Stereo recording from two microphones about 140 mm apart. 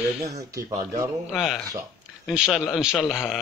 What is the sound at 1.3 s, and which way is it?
Mantra, centre (ahead or behind).